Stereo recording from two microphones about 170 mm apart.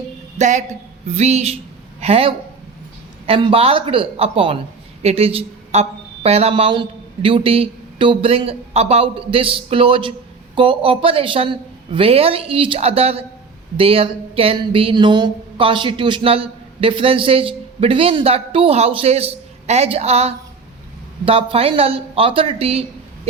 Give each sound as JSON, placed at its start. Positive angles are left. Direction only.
{"t": 0.3, "sound": "a woman's voice", "side_deg": -45}